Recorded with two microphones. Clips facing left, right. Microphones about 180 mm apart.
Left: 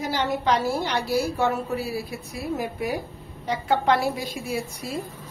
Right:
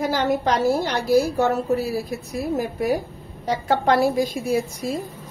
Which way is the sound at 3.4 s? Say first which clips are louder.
Right 2 dB; 40° right (ahead or behind).